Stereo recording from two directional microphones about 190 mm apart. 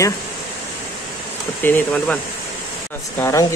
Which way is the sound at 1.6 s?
10° left (ahead or behind).